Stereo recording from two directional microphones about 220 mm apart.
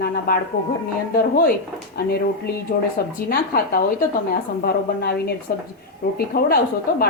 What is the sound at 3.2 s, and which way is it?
A woman's voice, 45° left (ahead or behind).